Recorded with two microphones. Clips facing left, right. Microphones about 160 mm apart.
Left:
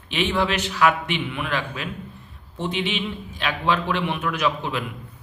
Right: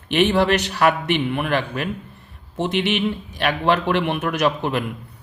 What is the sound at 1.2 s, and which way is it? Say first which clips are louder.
Speech: right 5 dB; 50° right (ahead or behind).